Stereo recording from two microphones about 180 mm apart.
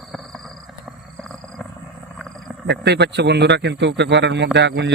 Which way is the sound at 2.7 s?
70° right (ahead or behind).